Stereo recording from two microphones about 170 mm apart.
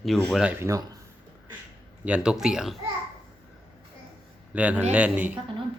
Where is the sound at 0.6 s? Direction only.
20° right (ahead or behind).